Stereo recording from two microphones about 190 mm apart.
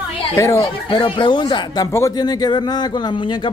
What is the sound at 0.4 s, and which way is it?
Speech, 15° left (ahead or behind).